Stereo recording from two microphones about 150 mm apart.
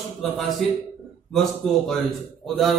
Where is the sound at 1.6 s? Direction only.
5° left (ahead or behind).